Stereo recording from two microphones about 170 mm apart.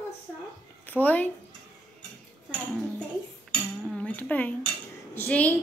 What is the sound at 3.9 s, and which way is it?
A woman's voice, 10° left (ahead or behind).